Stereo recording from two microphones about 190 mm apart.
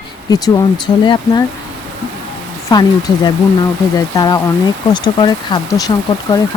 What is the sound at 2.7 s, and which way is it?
Speech, 20° left (ahead or behind).